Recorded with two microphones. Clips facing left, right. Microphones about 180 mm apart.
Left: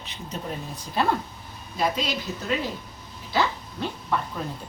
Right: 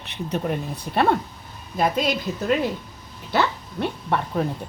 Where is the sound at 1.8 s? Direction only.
50° right (ahead or behind).